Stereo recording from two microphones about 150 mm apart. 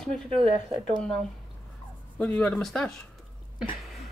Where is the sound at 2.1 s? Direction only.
10° left (ahead or behind).